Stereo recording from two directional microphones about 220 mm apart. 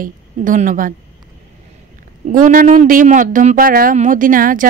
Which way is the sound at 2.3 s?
35° right (ahead or behind).